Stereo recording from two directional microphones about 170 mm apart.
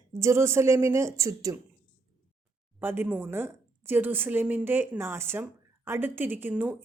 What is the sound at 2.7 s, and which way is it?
Speech, 10° right (ahead or behind).